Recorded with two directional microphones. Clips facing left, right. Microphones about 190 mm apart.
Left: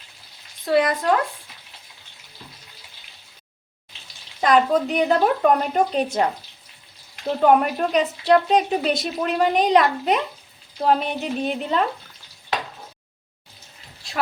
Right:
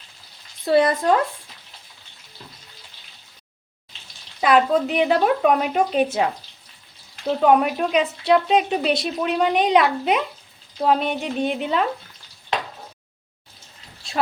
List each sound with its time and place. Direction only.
0.6 s speech: 30° right (ahead or behind)
4.4 s speech: 5° right (ahead or behind)
7.4 s speech: centre (ahead or behind)